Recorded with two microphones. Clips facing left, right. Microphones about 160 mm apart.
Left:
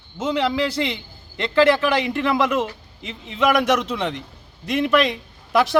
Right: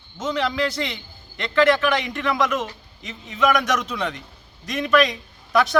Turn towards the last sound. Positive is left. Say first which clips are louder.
# left 1 dB
turn(degrees=30)  # may be behind; listen again after turning